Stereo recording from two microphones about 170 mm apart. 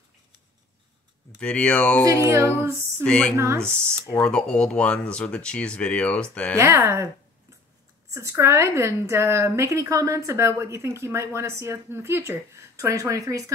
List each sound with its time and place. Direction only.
1.4 s speech: 5° left (ahead or behind)
2.2 s a woman's voice: 15° right (ahead or behind)
3.0 s a woman's voice: 5° left (ahead or behind)
3.3 s a woman's voice: 15° right (ahead or behind)
3.6 s a woman's voice: 5° left (ahead or behind)
6.6 s a woman's voice: 15° right (ahead or behind)
8.1 s a woman's voice: 15° right (ahead or behind)